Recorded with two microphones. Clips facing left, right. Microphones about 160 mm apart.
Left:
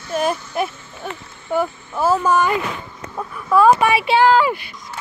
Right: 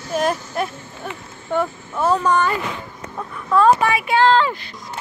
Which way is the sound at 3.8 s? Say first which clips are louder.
Left 3 dB; 25° left (ahead or behind).